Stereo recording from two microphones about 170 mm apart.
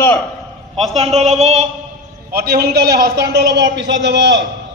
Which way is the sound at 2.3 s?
65° right (ahead or behind).